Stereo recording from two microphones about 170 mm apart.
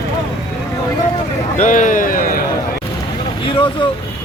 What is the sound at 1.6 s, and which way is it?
Speech, 50° left (ahead or behind).